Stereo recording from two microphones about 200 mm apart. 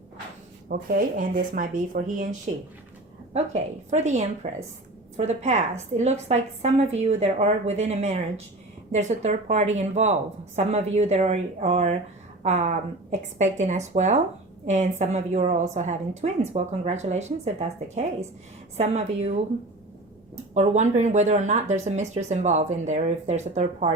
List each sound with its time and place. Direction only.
0.7 s speech: 45° right (ahead or behind)
3.3 s a woman's voice: 35° right (ahead or behind)
20.5 s a woman's voice: 35° right (ahead or behind)